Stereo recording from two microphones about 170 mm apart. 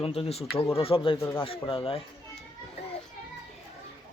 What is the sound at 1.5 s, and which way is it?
Speech, 30° left (ahead or behind).